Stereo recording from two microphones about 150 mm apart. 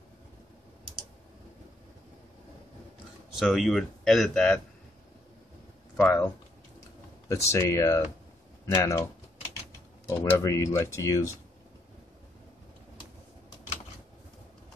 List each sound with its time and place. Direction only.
3.3 s speech: centre (ahead or behind)
5.9 s speech: 10° left (ahead or behind)
10.0 s speech: 20° left (ahead or behind)